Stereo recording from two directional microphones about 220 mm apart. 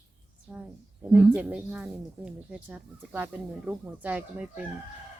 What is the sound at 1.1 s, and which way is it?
Speech, 5° right (ahead or behind).